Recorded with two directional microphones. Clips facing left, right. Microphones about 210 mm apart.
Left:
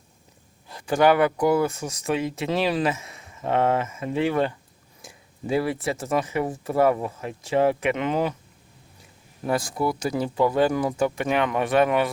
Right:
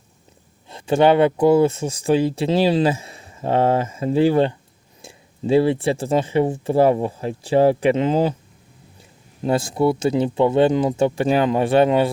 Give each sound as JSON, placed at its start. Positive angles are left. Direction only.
{"t": 0.7, "sound": "speech", "side_deg": -25}